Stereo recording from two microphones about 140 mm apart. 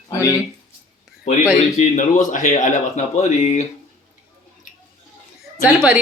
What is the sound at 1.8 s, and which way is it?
Speech, 65° left (ahead or behind).